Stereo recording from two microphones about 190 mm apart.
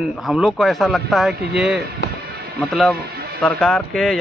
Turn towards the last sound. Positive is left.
turn(degrees=5)  # may be behind; listen again after turning